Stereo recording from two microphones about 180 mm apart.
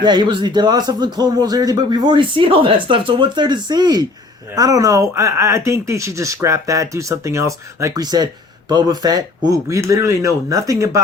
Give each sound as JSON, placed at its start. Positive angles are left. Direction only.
{"t": 0.0, "sound": "speech", "side_deg": -25}